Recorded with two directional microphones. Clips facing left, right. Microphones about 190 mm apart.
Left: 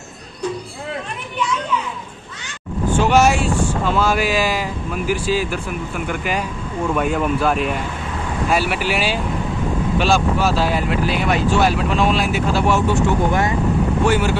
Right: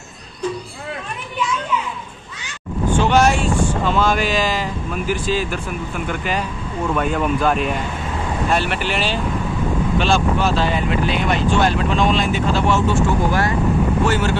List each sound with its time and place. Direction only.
3.0 s speech: 10° left (ahead or behind)